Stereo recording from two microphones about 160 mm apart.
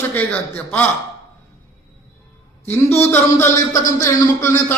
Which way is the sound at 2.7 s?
15° left (ahead or behind).